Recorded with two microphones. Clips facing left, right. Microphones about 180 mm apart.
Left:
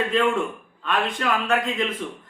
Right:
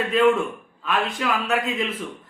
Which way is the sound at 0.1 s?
5° right (ahead or behind).